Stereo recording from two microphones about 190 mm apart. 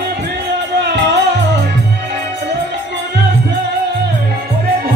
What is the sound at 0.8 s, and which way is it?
Music, 65° right (ahead or behind).